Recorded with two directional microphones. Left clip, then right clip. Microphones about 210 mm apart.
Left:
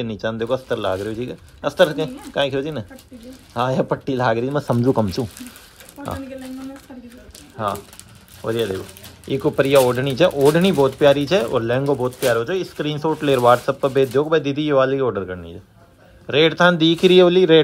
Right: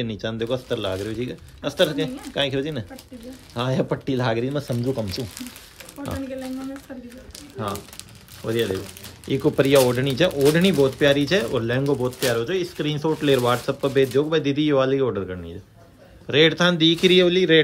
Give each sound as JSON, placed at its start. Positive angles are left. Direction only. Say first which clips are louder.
{"t": 0.0, "sound": "speech", "louder": "left 3 dB", "side_deg": -5}
{"t": 5.2, "sound": "speech", "louder": "left 6 dB", "side_deg": 60}
{"t": 6.0, "sound": "speech", "louder": "left 3 dB", "side_deg": 0}
{"t": 7.5, "sound": "speech", "louder": "left 6 dB", "side_deg": 0}